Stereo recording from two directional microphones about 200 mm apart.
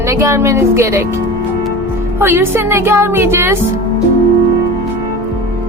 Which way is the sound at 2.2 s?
10° right (ahead or behind).